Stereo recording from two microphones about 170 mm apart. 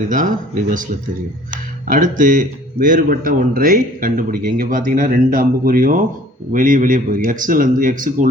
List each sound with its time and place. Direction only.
0.1 s speech: 50° right (ahead or behind)